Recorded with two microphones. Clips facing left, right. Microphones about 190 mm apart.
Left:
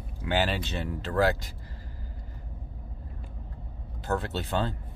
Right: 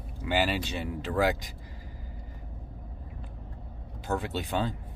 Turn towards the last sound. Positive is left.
turn(degrees=-15)  # may be behind; listen again after turning